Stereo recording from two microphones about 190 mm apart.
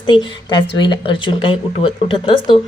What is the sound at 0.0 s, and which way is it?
Speech, 25° left (ahead or behind).